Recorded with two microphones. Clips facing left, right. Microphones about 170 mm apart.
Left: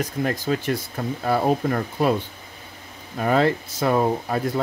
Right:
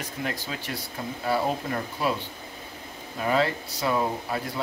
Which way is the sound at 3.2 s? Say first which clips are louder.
Left 5 dB; 50° left (ahead or behind).